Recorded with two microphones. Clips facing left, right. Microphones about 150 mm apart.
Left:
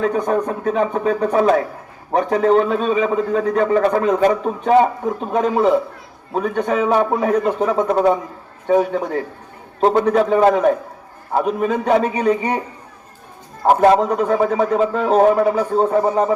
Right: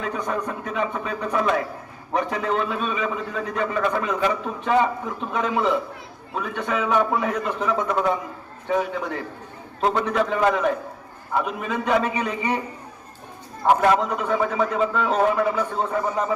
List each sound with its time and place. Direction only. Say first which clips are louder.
0.0 s a man's voice: left 9 dB; 40° left (ahead or behind)
13.7 s a man's voice: left 5 dB; 40° left (ahead or behind)